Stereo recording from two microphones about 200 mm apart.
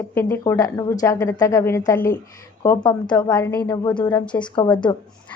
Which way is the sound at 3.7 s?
20° left (ahead or behind).